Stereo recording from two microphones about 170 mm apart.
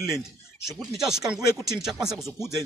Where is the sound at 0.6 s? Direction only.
Centre (ahead or behind).